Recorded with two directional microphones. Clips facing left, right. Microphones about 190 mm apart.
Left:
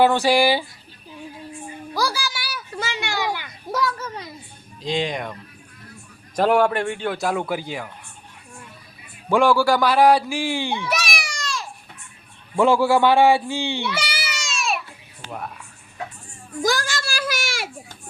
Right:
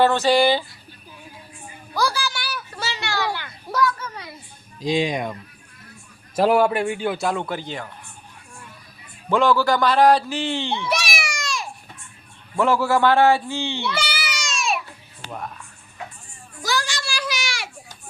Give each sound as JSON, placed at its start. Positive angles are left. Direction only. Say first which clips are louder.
{"t": 0.0, "sound": "a man's voice", "louder": "even", "side_deg": 10}
{"t": 1.9, "sound": "a sound", "louder": "right 2 dB", "side_deg": 10}
{"t": 4.8, "sound": "speech", "louder": "right 3 dB", "side_deg": -10}
{"t": 6.3, "sound": "a man's voice", "louder": "even", "side_deg": -5}
{"t": 9.3, "sound": "speech", "louder": "left 1 dB", "side_deg": 10}
{"t": 12.5, "sound": "a man's voice", "louder": "left 2 dB", "side_deg": 15}
{"t": 14.0, "sound": "a sound", "louder": "right 1 dB", "side_deg": 0}
{"t": 15.3, "sound": "a man's voice", "louder": "even", "side_deg": 5}
{"t": 16.6, "sound": "children playing", "louder": "left 3 dB", "side_deg": 50}